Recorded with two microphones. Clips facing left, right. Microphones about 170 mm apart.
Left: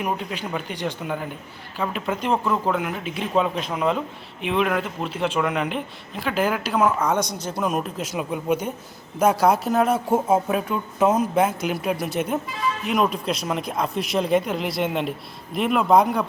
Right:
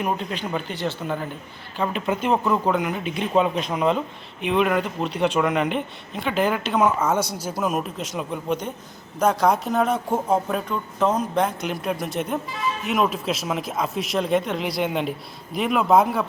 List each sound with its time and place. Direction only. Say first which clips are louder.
0.0 s speech: right 1 dB; 5° left (ahead or behind)
1.8 s speech: right 2 dB; centre (ahead or behind)